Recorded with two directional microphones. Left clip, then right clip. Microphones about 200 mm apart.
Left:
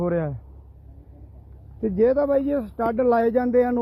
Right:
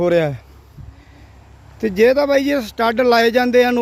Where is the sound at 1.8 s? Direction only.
20° right (ahead or behind).